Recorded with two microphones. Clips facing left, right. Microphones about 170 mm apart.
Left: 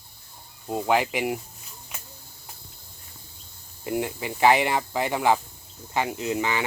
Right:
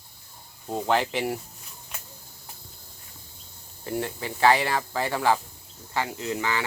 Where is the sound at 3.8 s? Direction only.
15° left (ahead or behind).